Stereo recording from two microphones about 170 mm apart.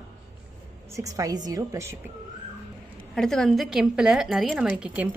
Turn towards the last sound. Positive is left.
turn(degrees=-5)  # may be behind; listen again after turning